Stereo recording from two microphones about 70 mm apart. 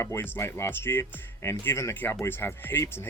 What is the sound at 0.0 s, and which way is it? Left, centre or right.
Speech, left.